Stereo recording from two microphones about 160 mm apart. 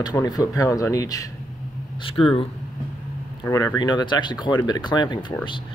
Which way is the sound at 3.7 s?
25° left (ahead or behind).